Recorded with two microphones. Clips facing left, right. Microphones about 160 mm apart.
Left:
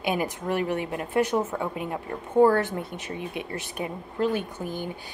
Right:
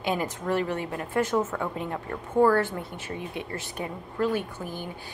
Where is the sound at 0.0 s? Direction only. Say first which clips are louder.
Left 1 dB; 15° left (ahead or behind).